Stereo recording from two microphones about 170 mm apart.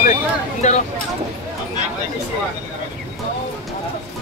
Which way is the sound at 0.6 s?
40° left (ahead or behind).